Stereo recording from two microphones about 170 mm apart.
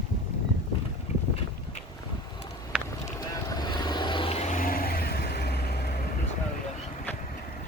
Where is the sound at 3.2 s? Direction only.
25° left (ahead or behind); by 5.9 s 75° left (ahead or behind).